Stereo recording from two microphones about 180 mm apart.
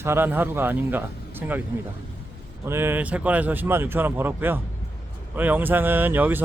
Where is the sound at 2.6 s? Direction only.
15° right (ahead or behind).